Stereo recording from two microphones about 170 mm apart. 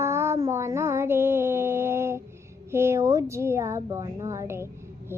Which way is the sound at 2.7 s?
15° right (ahead or behind).